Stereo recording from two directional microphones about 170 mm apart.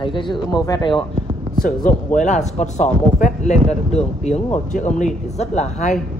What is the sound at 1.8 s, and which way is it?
Speech, 45° left (ahead or behind).